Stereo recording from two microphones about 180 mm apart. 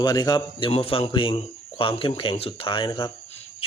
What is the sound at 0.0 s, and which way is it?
Speech, 20° left (ahead or behind).